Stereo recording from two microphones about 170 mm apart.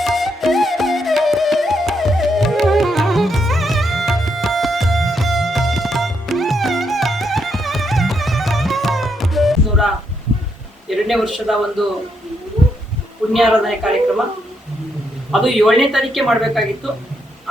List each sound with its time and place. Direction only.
0.0 s music: centre (ahead or behind)
10.8 s a man's voice: centre (ahead or behind)
13.3 s speech: centre (ahead or behind)
15.3 s speech: centre (ahead or behind)